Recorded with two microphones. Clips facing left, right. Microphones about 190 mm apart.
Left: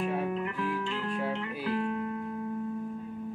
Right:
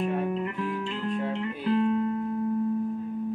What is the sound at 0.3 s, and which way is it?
Music, 30° right (ahead or behind).